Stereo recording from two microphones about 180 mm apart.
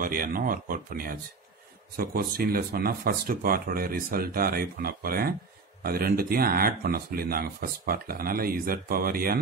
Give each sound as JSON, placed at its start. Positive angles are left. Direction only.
{"t": 0.0, "sound": "speech", "side_deg": -50}